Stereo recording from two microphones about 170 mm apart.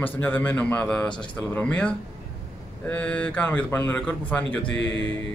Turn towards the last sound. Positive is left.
turn(degrees=90)